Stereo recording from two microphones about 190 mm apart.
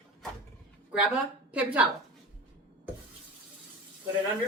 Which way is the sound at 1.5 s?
5° right (ahead or behind).